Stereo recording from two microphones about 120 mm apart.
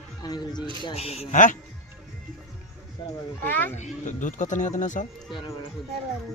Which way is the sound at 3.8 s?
90° left.